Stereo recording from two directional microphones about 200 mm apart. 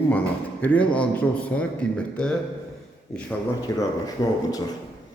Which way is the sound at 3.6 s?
15° left (ahead or behind).